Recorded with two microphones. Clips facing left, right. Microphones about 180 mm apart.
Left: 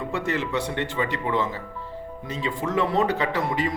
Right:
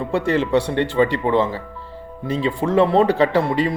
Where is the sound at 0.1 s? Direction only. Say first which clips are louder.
Right 10 dB; 30° right (ahead or behind).